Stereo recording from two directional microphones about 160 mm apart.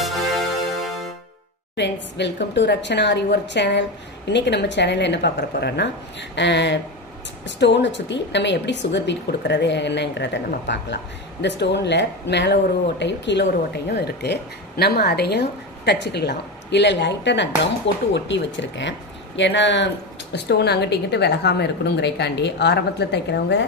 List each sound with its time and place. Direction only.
0.0 s music: centre (ahead or behind)
1.8 s a woman's voice: 90° left